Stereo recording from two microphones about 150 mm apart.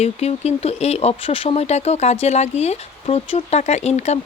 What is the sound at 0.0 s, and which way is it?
Speech, 45° left (ahead or behind).